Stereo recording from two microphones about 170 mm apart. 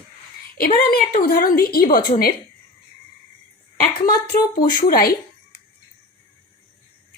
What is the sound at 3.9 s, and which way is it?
Speech, 60° left (ahead or behind).